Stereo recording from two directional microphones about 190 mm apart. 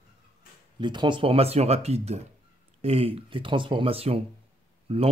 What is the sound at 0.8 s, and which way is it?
Speech, 25° right (ahead or behind).